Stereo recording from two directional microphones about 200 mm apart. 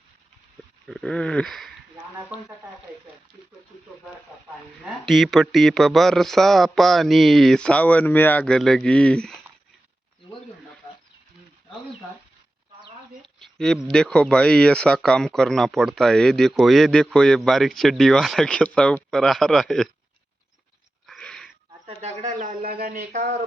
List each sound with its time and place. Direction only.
0.9 s speech: 5° left (ahead or behind)
5.0 s speech: centre (ahead or behind)
13.2 s a sound: centre (ahead or behind)
13.9 s speech: 5° left (ahead or behind)
21.1 s a sound: 5° left (ahead or behind)
21.8 s speech: 35° right (ahead or behind)